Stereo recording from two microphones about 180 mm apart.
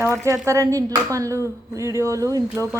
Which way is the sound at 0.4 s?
20° right (ahead or behind).